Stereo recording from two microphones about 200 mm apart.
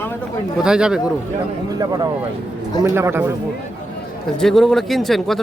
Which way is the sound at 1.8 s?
20° right (ahead or behind).